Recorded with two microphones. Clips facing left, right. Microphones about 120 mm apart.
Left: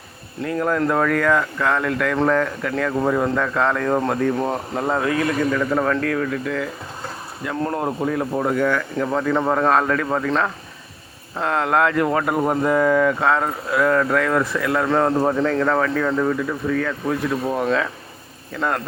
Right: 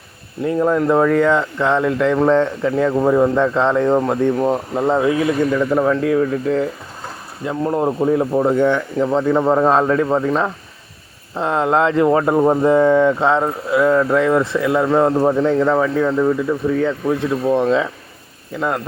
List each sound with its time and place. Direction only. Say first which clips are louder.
0.4 s speech: right 5 dB; 20° right (ahead or behind)
4.4 s speech: right 5 dB; 5° right (ahead or behind)
4.8 s speech: right 4 dB; 20° right (ahead or behind)
7.5 s speech: right 4 dB; 5° right (ahead or behind)
7.8 s speech: right 6 dB; 25° right (ahead or behind)
14.8 s speech: right 2 dB; 5° right (ahead or behind)
16.6 s speech: right 4 dB; 25° right (ahead or behind)
18.5 s speech: right 2 dB; 10° right (ahead or behind)